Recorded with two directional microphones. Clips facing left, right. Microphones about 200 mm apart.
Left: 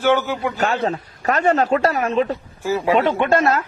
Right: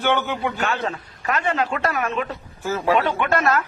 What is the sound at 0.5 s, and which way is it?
A man's voice, 35° left (ahead or behind).